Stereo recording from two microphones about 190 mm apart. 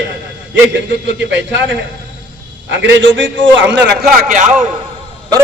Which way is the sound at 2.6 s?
70° right (ahead or behind).